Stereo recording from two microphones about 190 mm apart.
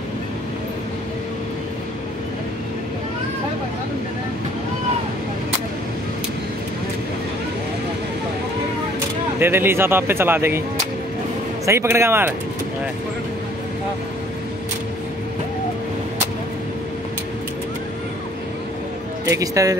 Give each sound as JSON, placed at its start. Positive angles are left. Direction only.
{"t": 9.4, "sound": "a man's voice", "side_deg": -10}
{"t": 11.6, "sound": "a man's voice", "side_deg": -15}
{"t": 19.2, "sound": "a man's voice", "side_deg": -15}